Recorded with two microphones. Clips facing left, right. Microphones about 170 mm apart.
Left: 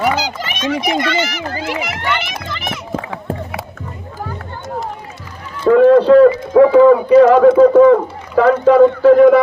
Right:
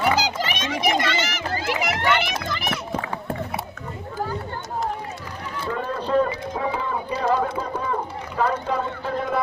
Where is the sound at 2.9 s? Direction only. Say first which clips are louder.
Left 4 dB; 90° left.